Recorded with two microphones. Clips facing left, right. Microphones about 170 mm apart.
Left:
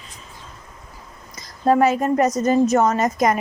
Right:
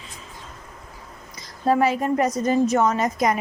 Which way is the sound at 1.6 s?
45° left (ahead or behind).